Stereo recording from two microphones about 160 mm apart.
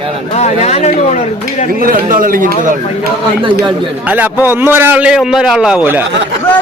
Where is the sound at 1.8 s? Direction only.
60° right (ahead or behind).